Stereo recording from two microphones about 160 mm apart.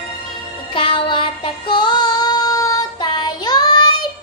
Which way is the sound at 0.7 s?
30° left (ahead or behind).